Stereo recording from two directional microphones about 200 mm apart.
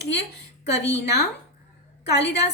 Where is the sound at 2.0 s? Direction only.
60° left (ahead or behind).